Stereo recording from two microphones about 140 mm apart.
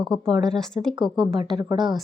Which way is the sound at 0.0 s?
5° left (ahead or behind).